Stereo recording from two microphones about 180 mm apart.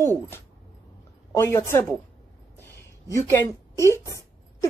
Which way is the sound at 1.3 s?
15° left (ahead or behind).